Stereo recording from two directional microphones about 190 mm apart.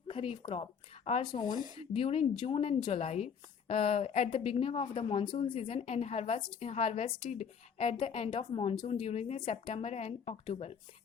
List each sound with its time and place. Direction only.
0.1 s speech: 30° left (ahead or behind)